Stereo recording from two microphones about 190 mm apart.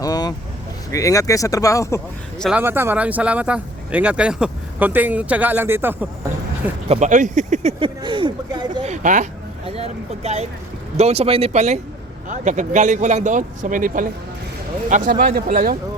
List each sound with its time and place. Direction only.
0.0 s vehicle: 20° left (ahead or behind)
0.9 s speech: 15° left (ahead or behind)
2.4 s speech: 5° right (ahead or behind)
6.8 s speech: 35° right (ahead or behind)
8.8 s speech: 40° right (ahead or behind)